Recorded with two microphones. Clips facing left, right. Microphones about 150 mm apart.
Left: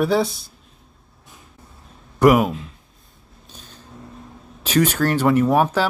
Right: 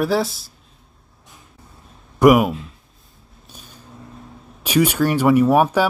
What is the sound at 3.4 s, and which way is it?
Vehicle, 10° right (ahead or behind).